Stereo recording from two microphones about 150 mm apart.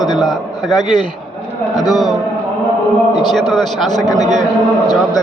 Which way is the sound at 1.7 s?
25° left (ahead or behind).